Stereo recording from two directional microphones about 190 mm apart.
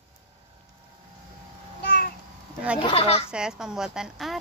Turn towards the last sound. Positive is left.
turn(degrees=0)  # may be behind; listen again after turning